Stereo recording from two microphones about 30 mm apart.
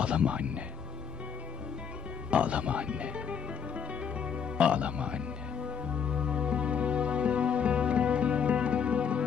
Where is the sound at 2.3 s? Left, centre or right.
Right.